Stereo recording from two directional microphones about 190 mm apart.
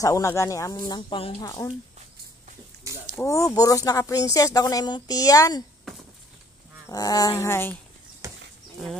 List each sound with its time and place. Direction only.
0.0 s speech: 15° left (ahead or behind)
2.9 s a sound: 15° right (ahead or behind)
3.2 s speech: 15° left (ahead or behind)
6.9 s speech: 20° left (ahead or behind)
8.2 s livestock: 15° right (ahead or behind)